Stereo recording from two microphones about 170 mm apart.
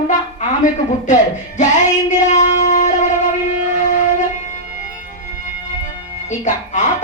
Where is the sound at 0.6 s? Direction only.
45° left (ahead or behind).